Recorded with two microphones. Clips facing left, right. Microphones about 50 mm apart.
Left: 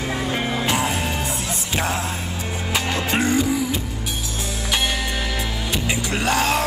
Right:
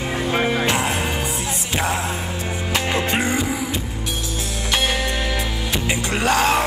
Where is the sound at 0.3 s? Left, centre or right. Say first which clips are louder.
Right 7 dB; right.